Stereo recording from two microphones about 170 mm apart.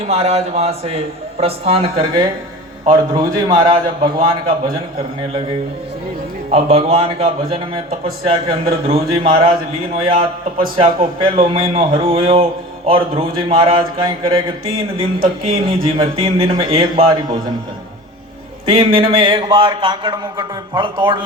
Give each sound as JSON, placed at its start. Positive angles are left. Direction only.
{"t": 0.1, "sound": "a man's voice", "side_deg": -40}
{"t": 6.5, "sound": "speech", "side_deg": -35}
{"t": 18.7, "sound": "a man's voice", "side_deg": -30}